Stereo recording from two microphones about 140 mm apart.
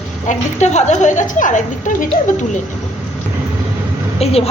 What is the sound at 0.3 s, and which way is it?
A woman's voice, 55° left (ahead or behind).